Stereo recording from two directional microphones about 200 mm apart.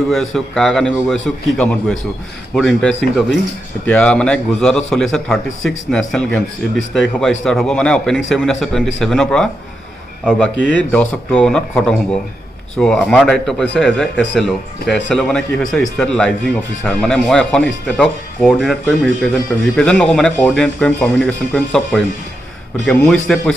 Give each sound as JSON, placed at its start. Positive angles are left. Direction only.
{"t": 0.1, "sound": "a man's voice", "side_deg": 0}